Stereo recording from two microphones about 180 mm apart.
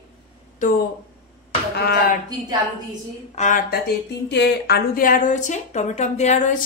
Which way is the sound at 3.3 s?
45° left (ahead or behind).